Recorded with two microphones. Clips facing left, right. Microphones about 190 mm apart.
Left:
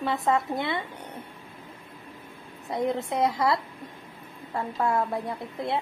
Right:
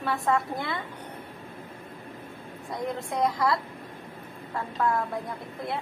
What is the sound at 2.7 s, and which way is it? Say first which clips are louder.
Speech: left 4 dB; 25° left (ahead or behind).